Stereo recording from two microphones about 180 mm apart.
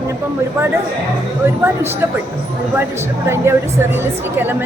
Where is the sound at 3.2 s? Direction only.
15° right (ahead or behind).